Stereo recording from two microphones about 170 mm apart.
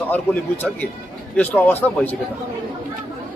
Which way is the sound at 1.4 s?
10° left (ahead or behind).